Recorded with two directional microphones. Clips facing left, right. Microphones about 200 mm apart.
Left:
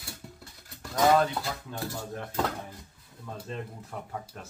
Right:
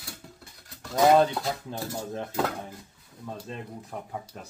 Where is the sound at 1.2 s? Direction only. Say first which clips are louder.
Right 4 dB; 30° right (ahead or behind).